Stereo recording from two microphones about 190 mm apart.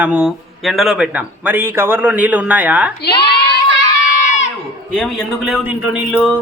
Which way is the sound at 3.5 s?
60° left (ahead or behind).